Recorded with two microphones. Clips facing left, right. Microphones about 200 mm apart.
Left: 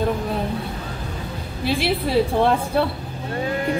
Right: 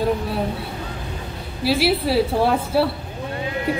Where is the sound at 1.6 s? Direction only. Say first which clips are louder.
Right 3 dB; 5° right (ahead or behind).